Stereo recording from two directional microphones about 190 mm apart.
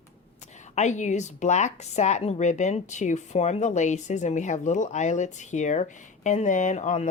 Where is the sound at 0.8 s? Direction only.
40° left (ahead or behind).